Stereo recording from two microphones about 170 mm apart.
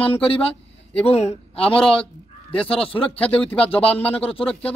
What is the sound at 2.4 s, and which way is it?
Speech, 35° left (ahead or behind).